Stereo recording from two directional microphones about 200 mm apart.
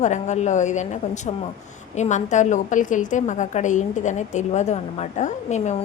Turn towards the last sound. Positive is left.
turn(degrees=35)  # may be behind; listen again after turning